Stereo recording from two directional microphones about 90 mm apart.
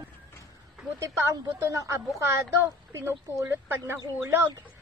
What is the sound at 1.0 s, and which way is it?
A woman's voice, 30° right (ahead or behind).